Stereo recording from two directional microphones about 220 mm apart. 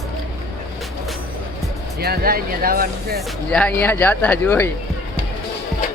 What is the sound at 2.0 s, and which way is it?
Speech, 45° right (ahead or behind).